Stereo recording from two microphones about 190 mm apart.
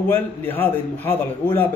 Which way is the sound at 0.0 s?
10° left (ahead or behind).